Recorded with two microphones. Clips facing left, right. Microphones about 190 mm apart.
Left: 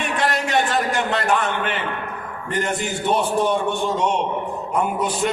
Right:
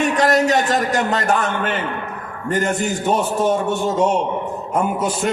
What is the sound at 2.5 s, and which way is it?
A man's voice, 45° right (ahead or behind).